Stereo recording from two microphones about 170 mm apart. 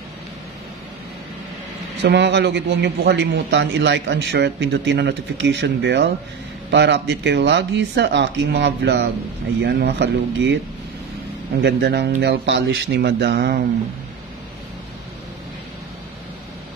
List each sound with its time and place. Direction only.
2.0 s a man's voice: 90° right
11.6 s speech: 80° right